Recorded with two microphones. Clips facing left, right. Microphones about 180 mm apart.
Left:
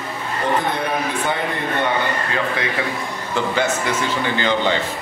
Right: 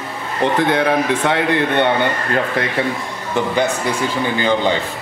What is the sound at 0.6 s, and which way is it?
A man's voice, 90° right.